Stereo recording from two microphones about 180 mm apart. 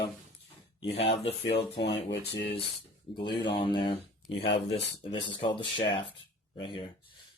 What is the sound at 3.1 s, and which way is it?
Speech, 25° left (ahead or behind).